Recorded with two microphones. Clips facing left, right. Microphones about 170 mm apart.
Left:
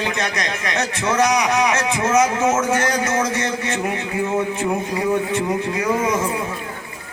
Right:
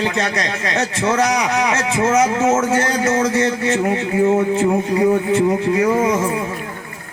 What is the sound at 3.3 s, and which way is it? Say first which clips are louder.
Speech: right 6 dB; 35° right (ahead or behind).